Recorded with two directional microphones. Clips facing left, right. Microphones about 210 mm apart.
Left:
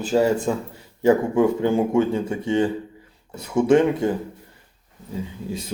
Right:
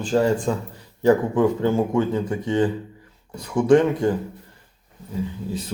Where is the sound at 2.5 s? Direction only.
25° left (ahead or behind).